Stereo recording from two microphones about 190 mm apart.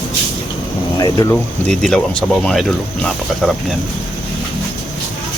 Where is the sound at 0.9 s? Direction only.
20° left (ahead or behind).